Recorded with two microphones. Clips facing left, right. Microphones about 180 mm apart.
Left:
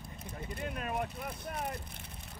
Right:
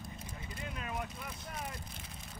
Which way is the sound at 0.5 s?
50° left (ahead or behind).